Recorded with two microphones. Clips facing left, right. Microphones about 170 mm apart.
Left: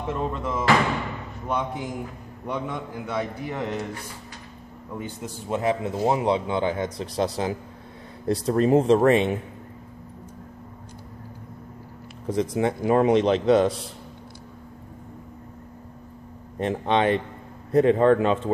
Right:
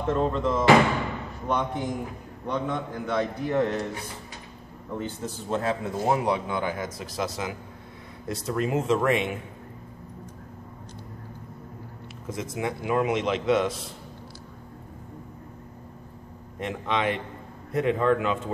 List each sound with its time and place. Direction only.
0.0 s a man's voice: 10° left (ahead or behind)
4.9 s a man's voice: 15° left (ahead or behind); by 9.4 s 35° left (ahead or behind)
12.3 s a man's voice: 35° left (ahead or behind)
16.5 s a man's voice: 35° left (ahead or behind)